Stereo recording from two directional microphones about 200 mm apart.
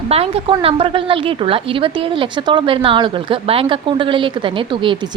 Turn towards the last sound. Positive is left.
turn(degrees=-25)  # may be behind; listen again after turning